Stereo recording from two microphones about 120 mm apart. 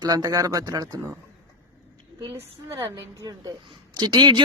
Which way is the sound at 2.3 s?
20° right (ahead or behind).